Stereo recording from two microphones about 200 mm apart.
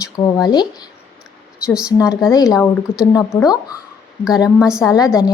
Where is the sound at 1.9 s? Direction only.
15° left (ahead or behind).